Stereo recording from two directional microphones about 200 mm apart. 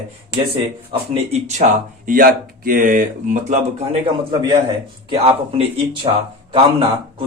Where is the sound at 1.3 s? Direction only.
35° right (ahead or behind).